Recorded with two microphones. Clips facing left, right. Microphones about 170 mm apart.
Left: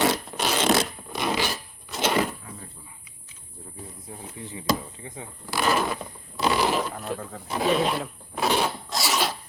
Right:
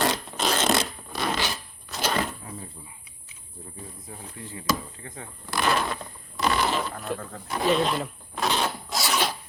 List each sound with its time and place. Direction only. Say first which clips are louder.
0.0 s fart: left 2 dB; 10° left (ahead or behind)
1.1 s filing: left 2 dB; 15° left (ahead or behind)
1.9 s a sound: left 3 dB; 25° left (ahead or behind)
4.4 s speech: left 2 dB; 15° left (ahead or behind)
8.6 s zipper: left 1 dB; centre (ahead or behind)